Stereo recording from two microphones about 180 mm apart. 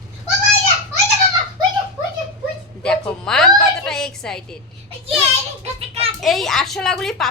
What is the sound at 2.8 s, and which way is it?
Speech, 5° left (ahead or behind).